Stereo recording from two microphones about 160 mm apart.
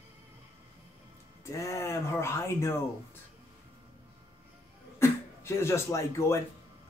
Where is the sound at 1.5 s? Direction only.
20° left (ahead or behind).